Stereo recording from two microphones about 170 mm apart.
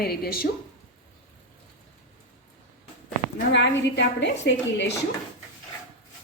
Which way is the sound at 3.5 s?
90° left.